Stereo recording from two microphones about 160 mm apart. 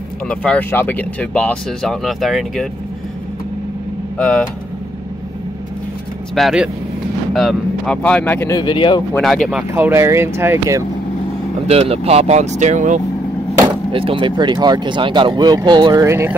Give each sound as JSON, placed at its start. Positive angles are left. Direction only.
{"t": 0.3, "sound": "speech", "side_deg": 10}
{"t": 4.2, "sound": "speech", "side_deg": 5}
{"t": 6.3, "sound": "speech", "side_deg": 0}
{"t": 8.5, "sound": "speech", "side_deg": 30}
{"t": 9.1, "sound": "speech", "side_deg": 5}
{"t": 9.6, "sound": "speech", "side_deg": -10}
{"t": 11.6, "sound": "speech", "side_deg": -40}
{"t": 13.9, "sound": "speech", "side_deg": -35}